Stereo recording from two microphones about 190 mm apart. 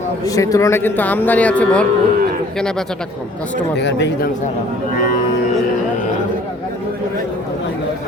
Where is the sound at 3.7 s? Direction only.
65° left (ahead or behind).